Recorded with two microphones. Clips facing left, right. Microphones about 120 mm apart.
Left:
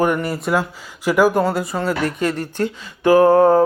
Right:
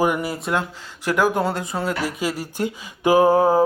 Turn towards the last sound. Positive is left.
turn(degrees=-10)  # may be behind; listen again after turning